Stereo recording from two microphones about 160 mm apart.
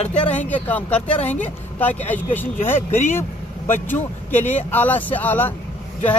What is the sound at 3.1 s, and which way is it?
Vehicle, 15° left (ahead or behind).